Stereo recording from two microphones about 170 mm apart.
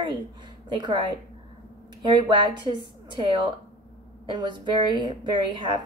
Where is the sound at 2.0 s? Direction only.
25° right (ahead or behind).